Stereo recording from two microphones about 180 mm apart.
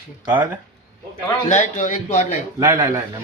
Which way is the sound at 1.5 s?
45° left (ahead or behind).